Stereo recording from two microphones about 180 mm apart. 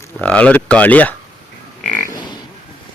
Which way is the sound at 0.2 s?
5° left (ahead or behind).